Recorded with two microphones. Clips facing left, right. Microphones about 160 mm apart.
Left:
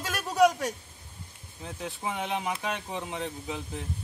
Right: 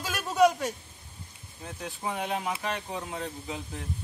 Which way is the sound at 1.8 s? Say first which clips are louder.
Even; 5° left (ahead or behind).